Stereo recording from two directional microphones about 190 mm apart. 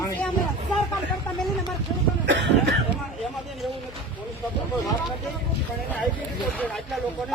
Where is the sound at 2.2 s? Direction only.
75° right (ahead or behind).